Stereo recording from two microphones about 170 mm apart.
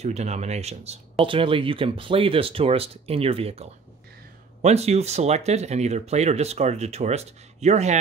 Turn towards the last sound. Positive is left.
turn(degrees=-40)  # may be behind; listen again after turning